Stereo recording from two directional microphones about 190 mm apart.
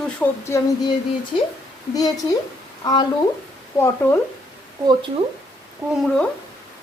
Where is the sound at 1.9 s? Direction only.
20° left (ahead or behind).